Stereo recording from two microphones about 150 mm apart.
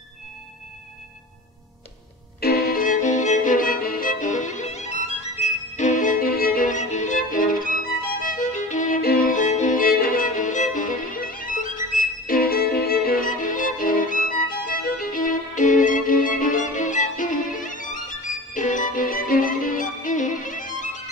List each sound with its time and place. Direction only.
2.4 s music: 90° left; by 11.8 s 60° left (ahead or behind)
12.3 s music: 80° left; by 14.4 s 65° left (ahead or behind)
14.7 s violin: 70° left (ahead or behind)